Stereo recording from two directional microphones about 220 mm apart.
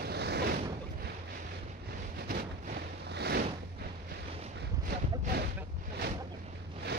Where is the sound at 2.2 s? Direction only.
45° right (ahead or behind).